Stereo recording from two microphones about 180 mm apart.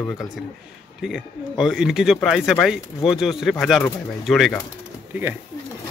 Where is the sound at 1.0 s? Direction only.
Centre (ahead or behind).